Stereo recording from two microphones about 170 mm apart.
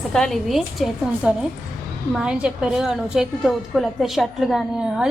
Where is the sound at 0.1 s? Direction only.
Centre (ahead or behind).